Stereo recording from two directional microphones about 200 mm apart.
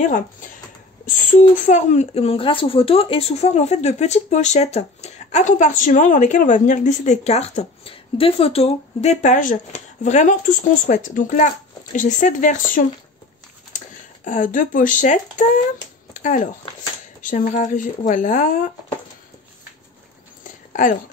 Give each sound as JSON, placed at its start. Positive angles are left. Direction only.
{"t": 1.7, "sound": "speech", "side_deg": 35}
{"t": 16.1, "sound": "a sound", "side_deg": 40}
{"t": 17.2, "sound": "speech", "side_deg": 40}